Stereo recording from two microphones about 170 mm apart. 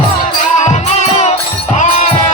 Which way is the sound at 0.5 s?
40° left (ahead or behind).